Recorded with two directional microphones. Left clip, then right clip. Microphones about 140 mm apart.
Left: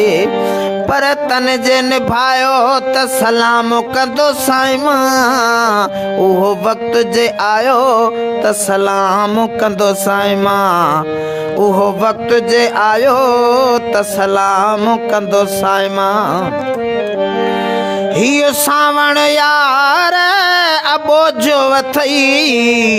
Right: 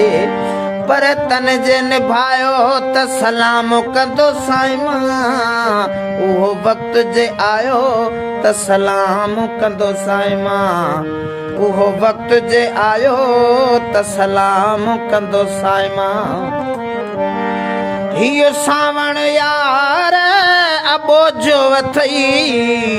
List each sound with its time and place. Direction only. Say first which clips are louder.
0.0 s music: left 1 dB; 50° left (ahead or behind); by 4.0 s 35° left (ahead or behind)
4.2 s music: left 1 dB; 55° left (ahead or behind)
8.4 s music: right 2 dB; 40° left (ahead or behind)
9.8 s music: left 4 dB; 60° left (ahead or behind)
18.2 s music: right 1 dB; 50° left (ahead or behind)